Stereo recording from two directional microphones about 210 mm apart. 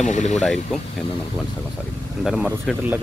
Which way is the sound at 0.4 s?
Centre (ahead or behind).